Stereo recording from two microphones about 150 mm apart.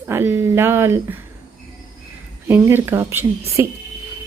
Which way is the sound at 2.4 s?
15° right (ahead or behind).